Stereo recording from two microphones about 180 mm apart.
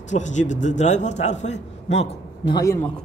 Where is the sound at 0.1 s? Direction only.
40° left (ahead or behind).